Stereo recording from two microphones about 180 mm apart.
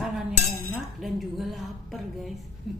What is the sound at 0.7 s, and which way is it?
Speech, centre (ahead or behind).